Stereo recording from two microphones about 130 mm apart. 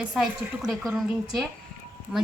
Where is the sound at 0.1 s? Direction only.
5° right (ahead or behind).